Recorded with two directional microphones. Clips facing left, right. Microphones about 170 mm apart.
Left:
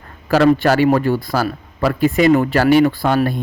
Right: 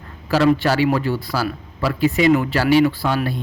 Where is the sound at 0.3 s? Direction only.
50° left (ahead or behind).